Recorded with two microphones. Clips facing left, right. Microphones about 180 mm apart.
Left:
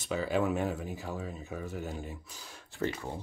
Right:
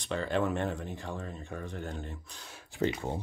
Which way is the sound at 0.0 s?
5° left (ahead or behind).